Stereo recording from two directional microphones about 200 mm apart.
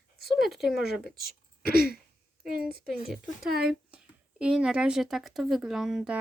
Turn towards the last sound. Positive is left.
turn(degrees=-5)  # may be behind; listen again after turning